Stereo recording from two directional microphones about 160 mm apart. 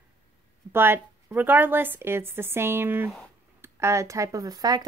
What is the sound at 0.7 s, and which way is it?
A woman's voice, 15° right (ahead or behind).